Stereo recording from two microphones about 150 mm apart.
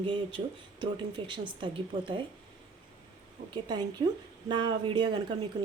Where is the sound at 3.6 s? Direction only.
25° right (ahead or behind).